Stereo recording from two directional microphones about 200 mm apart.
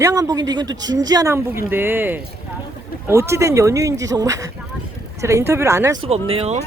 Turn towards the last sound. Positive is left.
turn(degrees=-30)  # may be behind; listen again after turning